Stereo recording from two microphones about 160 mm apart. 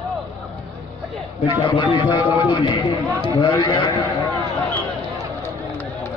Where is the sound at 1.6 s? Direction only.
30° left (ahead or behind).